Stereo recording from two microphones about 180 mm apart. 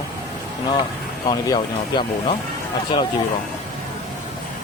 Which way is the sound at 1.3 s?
25° left (ahead or behind).